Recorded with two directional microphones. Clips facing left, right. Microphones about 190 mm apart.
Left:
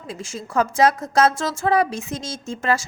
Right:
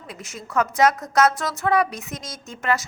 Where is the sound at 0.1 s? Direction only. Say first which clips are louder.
Left 2 dB; 30° left (ahead or behind).